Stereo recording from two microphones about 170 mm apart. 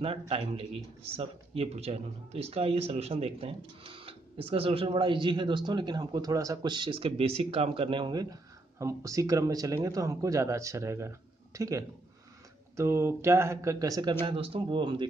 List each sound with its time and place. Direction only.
0.0 s speech: 35° right (ahead or behind)
14.2 s speech: 35° right (ahead or behind)